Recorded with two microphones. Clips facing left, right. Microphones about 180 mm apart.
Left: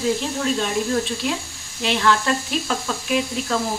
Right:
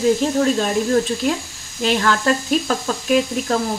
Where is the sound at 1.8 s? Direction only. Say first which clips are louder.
Right 1 dB; 45° right (ahead or behind).